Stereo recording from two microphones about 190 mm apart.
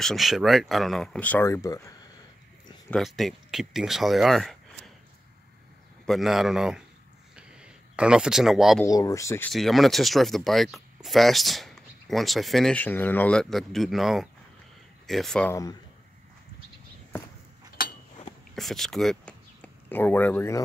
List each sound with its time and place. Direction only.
0.0 s speech: centre (ahead or behind); by 1.8 s 15° left (ahead or behind)
2.9 s speech: centre (ahead or behind)
6.0 s speech: centre (ahead or behind)
7.3 s a sound: 5° right (ahead or behind)
8.8 s speech: 15° left (ahead or behind)
9.5 s speech: centre (ahead or behind)
17.7 s a sound: 50° left (ahead or behind)
18.5 s speech: centre (ahead or behind)